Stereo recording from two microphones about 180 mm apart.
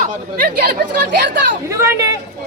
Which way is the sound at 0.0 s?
55° right (ahead or behind).